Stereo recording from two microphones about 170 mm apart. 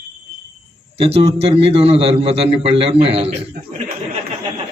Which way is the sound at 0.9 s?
35° right (ahead or behind).